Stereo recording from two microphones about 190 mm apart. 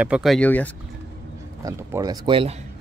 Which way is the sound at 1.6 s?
20° right (ahead or behind).